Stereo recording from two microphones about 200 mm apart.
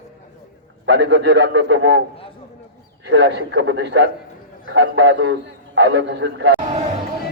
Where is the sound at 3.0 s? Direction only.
60° right (ahead or behind).